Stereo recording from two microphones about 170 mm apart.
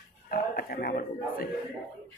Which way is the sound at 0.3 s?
60° left (ahead or behind).